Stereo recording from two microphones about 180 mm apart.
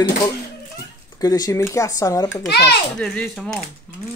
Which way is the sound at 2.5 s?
65° left (ahead or behind).